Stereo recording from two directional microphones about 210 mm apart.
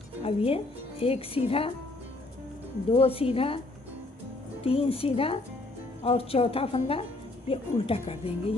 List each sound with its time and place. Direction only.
0.2 s a woman's voice: 25° left (ahead or behind)
2.9 s a woman's voice: 25° left (ahead or behind)
4.6 s a woman's voice: 25° left (ahead or behind)